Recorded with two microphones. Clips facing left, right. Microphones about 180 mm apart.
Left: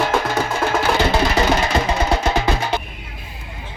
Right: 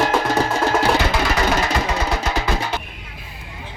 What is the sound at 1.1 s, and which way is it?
Music, 30° left (ahead or behind).